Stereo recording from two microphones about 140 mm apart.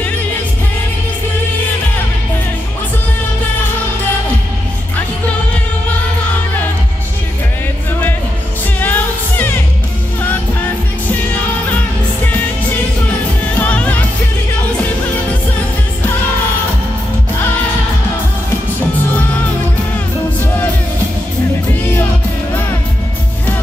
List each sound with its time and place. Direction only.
8.7 s music: 15° left (ahead or behind)
13.6 s music: 10° left (ahead or behind)
19.1 s music: 10° left (ahead or behind)